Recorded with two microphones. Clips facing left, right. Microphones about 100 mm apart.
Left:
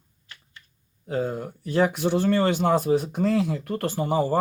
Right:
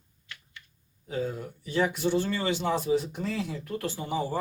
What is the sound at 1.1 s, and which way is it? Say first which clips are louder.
Speech: left 5 dB; 60° left (ahead or behind).